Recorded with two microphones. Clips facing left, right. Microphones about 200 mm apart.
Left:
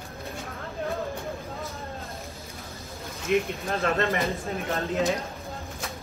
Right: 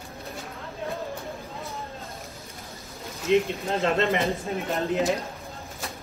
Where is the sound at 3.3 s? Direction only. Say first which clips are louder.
Right 3 dB; 20° right (ahead or behind).